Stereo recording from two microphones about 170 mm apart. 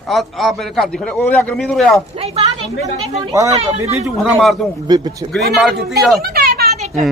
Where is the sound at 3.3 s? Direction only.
20° right (ahead or behind).